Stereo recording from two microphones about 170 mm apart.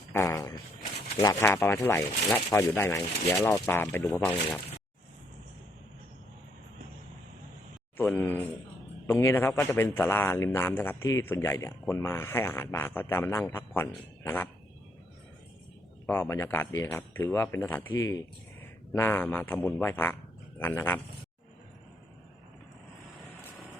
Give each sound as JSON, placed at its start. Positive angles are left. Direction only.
{"t": 0.1, "sound": "speech", "side_deg": 15}
{"t": 7.9, "sound": "a sound", "side_deg": 10}
{"t": 9.0, "sound": "speech", "side_deg": 15}
{"t": 16.0, "sound": "speech", "side_deg": 15}